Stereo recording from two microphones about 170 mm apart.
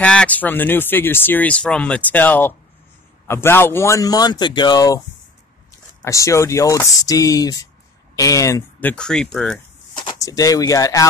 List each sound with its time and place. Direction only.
0.0 s speech: 5° left (ahead or behind)
6.0 s speech: 20° left (ahead or behind)
8.9 s speech: 5° left (ahead or behind)
10.0 s speech: 20° left (ahead or behind)